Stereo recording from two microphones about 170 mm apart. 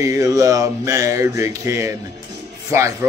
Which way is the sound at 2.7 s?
15° right (ahead or behind).